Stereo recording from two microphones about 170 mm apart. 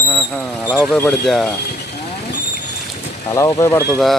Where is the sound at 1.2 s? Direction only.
Centre (ahead or behind).